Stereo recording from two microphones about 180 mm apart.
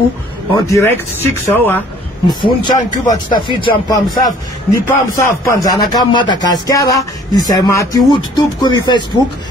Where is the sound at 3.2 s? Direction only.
25° left (ahead or behind).